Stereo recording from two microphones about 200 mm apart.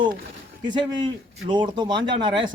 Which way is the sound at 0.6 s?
20° right (ahead or behind).